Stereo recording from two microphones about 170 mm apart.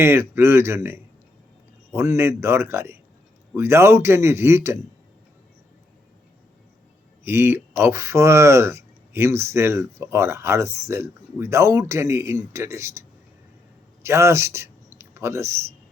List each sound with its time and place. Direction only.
0.0 s speech: 15° right (ahead or behind)
7.3 s speech: 15° right (ahead or behind)